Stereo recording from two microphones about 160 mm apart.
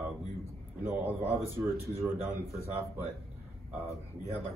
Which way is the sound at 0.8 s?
15° right (ahead or behind).